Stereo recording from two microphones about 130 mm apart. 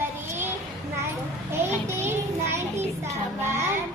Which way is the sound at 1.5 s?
20° right (ahead or behind).